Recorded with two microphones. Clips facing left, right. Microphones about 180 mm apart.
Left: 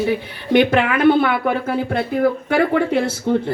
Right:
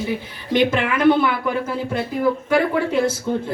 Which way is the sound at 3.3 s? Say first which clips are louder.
Left 4 dB; 65° left (ahead or behind).